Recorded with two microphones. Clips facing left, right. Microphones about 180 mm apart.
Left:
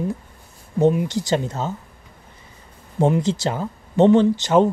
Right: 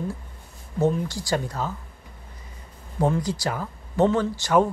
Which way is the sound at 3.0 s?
25° left (ahead or behind).